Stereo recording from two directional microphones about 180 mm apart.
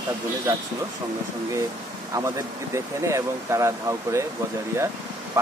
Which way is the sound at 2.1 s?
15° right (ahead or behind).